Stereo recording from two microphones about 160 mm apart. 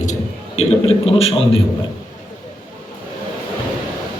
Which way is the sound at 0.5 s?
40° left (ahead or behind).